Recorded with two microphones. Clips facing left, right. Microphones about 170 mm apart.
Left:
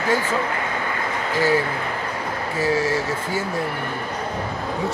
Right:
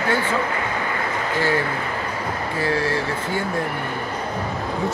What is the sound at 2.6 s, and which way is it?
Speech, 10° left (ahead or behind).